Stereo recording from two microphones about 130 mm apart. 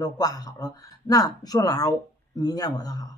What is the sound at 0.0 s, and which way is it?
A woman's voice, 30° left (ahead or behind).